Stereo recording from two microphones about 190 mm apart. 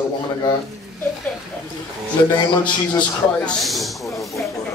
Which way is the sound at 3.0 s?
5° left (ahead or behind).